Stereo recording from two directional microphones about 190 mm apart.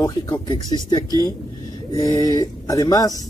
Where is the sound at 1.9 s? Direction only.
20° left (ahead or behind).